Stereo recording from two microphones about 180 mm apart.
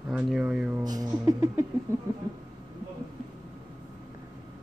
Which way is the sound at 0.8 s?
20° right (ahead or behind).